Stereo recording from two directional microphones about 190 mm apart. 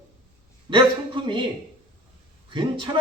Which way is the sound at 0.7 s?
25° right (ahead or behind).